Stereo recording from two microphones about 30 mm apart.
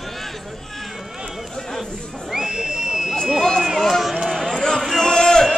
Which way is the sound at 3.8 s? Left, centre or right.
Centre.